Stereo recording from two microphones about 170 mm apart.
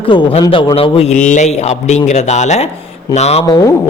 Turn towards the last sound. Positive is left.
turn(degrees=20)  # may be behind; listen again after turning